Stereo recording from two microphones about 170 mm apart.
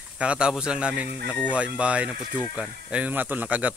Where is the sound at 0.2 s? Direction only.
5° right (ahead or behind).